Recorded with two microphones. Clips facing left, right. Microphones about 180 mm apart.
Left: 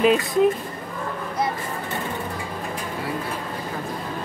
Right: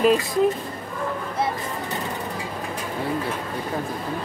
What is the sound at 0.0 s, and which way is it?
Speech, centre (ahead or behind).